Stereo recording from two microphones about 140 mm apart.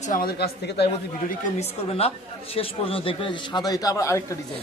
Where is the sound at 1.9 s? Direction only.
45° left (ahead or behind); by 4.3 s 20° left (ahead or behind).